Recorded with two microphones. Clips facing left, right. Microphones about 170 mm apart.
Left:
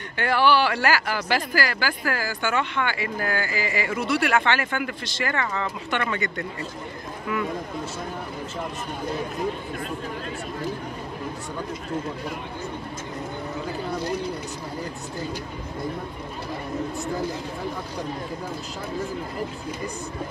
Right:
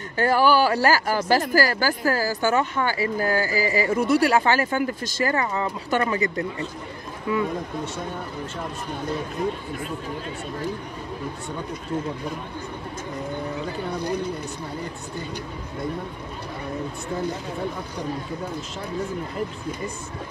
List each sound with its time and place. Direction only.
0.2 s speech: 40° right (ahead or behind)